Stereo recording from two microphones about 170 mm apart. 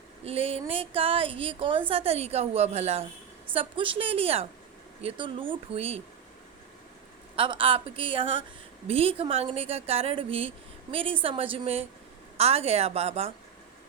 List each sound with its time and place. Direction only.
0.3 s speech: 35° right (ahead or behind)
7.3 s speech: 30° right (ahead or behind)